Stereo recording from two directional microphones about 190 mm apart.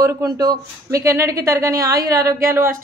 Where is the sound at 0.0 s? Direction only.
20° right (ahead or behind).